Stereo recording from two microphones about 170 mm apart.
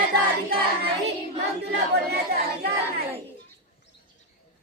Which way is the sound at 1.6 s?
75° right (ahead or behind).